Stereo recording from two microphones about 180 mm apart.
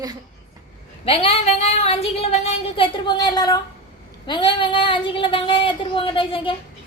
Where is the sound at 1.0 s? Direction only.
35° left (ahead or behind).